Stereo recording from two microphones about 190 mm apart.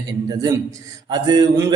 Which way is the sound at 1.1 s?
20° right (ahead or behind).